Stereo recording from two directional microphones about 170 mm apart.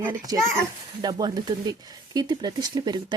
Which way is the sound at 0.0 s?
20° right (ahead or behind).